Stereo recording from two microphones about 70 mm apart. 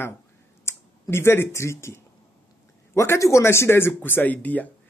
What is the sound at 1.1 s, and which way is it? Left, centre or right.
A man's voice, left.